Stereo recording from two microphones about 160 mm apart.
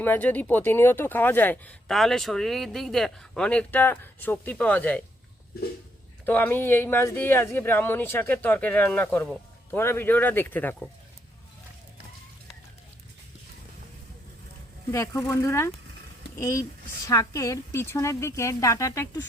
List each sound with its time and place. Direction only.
0.0 s speech: 10° left (ahead or behind)
6.2 s speech: 10° left (ahead or behind)
14.9 s speech: 15° left (ahead or behind)